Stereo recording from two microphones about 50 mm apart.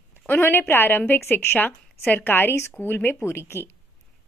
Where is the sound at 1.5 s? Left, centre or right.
Left.